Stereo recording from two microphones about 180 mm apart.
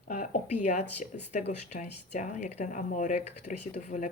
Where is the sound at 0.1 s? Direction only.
45° left (ahead or behind).